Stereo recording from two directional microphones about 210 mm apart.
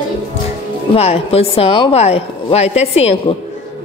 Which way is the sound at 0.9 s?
30° left (ahead or behind).